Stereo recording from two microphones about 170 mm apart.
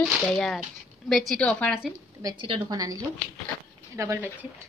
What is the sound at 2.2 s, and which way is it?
A woman's voice, 25° right (ahead or behind).